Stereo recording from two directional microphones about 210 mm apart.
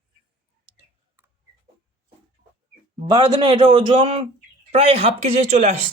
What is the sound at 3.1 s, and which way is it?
A man's voice, 20° right (ahead or behind).